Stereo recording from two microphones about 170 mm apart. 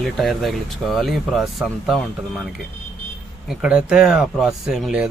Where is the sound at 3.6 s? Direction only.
5° right (ahead or behind).